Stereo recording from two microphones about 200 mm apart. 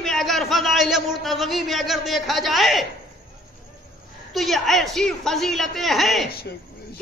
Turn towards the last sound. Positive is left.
turn(degrees=50)  # may be behind; listen again after turning